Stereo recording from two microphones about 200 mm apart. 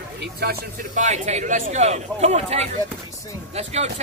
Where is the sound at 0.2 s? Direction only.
50° right (ahead or behind).